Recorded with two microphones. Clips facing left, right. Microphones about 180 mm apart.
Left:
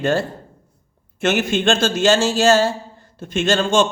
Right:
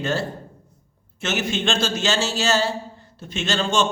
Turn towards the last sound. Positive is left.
turn(degrees=50)  # may be behind; listen again after turning